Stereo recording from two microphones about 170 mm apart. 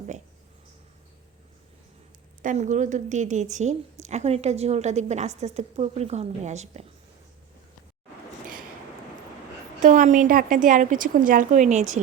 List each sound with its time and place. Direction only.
2.4 s a woman's voice: 45° right (ahead or behind)
9.8 s a woman's voice: 50° right (ahead or behind)